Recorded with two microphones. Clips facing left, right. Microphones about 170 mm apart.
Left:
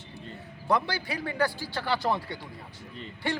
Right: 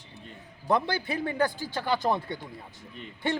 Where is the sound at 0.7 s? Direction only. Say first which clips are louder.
Right 1 dB; 20° right (ahead or behind).